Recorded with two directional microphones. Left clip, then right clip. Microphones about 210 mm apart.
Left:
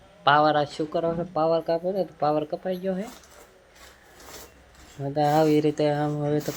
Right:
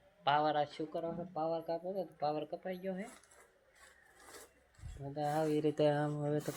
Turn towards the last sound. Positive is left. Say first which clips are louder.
# left 11 dB
turn(degrees=0)  # may be behind; listen again after turning